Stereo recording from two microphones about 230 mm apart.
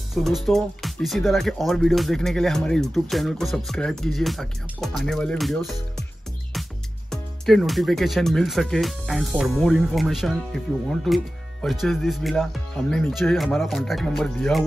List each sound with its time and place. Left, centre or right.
0.1 s speech: centre
7.1 s speech: centre